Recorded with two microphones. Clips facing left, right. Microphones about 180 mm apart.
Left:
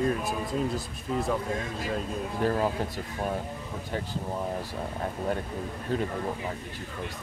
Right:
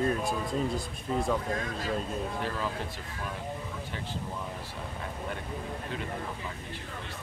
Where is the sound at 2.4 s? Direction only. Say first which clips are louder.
Left 12 dB; 45° left (ahead or behind).